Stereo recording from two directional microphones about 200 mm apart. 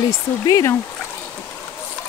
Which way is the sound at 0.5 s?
15° left (ahead or behind).